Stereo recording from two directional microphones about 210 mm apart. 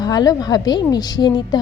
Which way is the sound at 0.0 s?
20° left (ahead or behind).